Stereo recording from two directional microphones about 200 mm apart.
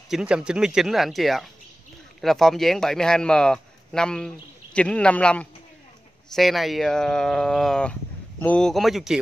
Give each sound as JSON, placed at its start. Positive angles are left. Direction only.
{"t": 0.1, "sound": "speech", "side_deg": -5}